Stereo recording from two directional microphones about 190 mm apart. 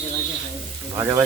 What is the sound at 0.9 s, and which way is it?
Speech, 15° right (ahead or behind).